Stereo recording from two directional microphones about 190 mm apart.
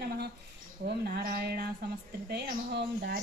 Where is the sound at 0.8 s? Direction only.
55° right (ahead or behind).